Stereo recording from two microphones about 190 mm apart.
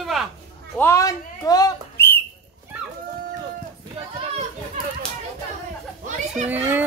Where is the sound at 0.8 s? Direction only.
15° left (ahead or behind).